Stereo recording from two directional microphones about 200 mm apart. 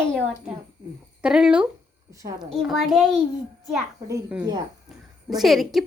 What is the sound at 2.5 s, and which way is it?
A woman's voice, centre (ahead or behind).